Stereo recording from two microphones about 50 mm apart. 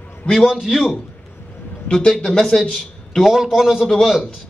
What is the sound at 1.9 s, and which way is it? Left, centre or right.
Speech, centre.